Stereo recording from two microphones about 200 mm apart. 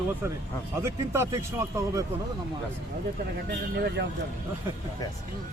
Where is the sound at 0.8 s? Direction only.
15° right (ahead or behind).